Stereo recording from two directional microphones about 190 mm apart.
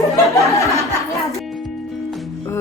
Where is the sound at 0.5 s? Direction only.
15° left (ahead or behind).